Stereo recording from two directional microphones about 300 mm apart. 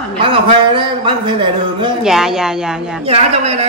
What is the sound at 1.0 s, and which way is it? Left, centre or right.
Speech, centre.